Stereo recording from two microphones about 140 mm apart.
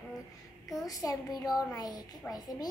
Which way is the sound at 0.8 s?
25° left (ahead or behind).